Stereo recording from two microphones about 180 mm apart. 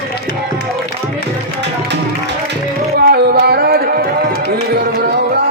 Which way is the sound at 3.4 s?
60° right (ahead or behind).